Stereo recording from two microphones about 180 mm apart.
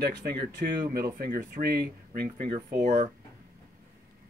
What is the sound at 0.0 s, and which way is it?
Speech, 60° right (ahead or behind).